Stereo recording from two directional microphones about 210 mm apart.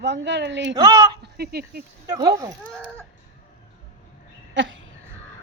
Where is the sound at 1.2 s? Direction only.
50° right (ahead or behind).